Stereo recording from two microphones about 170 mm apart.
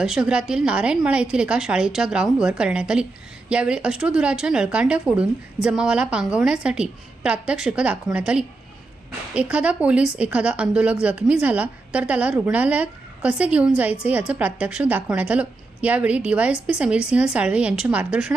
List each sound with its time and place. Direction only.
0.0 s a woman's voice: 5° right (ahead or behind)